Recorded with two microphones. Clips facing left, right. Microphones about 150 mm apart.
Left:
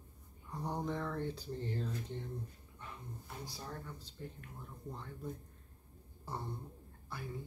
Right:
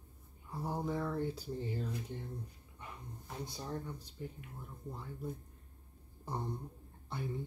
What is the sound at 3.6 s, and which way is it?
Speech, 15° right (ahead or behind).